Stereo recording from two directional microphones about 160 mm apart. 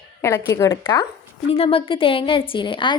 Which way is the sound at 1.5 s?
35° left (ahead or behind).